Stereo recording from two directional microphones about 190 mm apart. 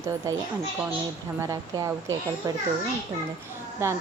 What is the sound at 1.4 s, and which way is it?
Speech, 15° right (ahead or behind).